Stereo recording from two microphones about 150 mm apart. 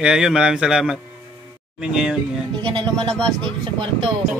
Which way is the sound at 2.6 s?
30° right (ahead or behind).